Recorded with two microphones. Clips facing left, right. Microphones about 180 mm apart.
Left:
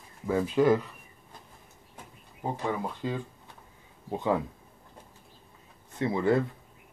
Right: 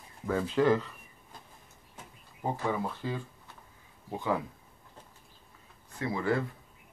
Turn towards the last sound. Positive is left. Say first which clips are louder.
# left 5 dB
turn(degrees=20)  # may be behind; listen again after turning